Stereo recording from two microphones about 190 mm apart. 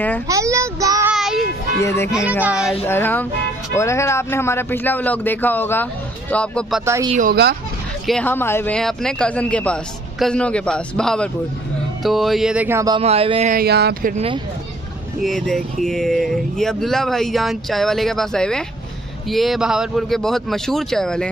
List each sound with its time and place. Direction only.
0.3 s a child's voice: 15° right (ahead or behind)
1.1 s child singing: centre (ahead or behind)
1.8 s a man's voice: 15° left (ahead or behind)
2.4 s speech: 5° right (ahead or behind)
2.9 s a man's voice: 10° left (ahead or behind)
7.2 s speech: 50° right (ahead or behind)
8.1 s speech: 10° left (ahead or behind); by 13.0 s 15° right (ahead or behind)
13.0 s speech: 30° right (ahead or behind)
13.5 s speech: 55° right (ahead or behind)
14.1 s speech: 30° right (ahead or behind)
15.2 s speech: centre (ahead or behind)